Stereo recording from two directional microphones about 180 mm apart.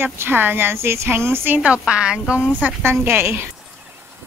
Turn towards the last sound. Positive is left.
turn(degrees=-15)  # may be behind; listen again after turning